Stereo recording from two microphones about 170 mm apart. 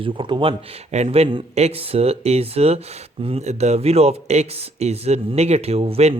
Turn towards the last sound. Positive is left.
turn(degrees=-35)  # may be behind; listen again after turning